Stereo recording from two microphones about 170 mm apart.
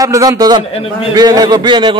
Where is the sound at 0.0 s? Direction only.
20° right (ahead or behind).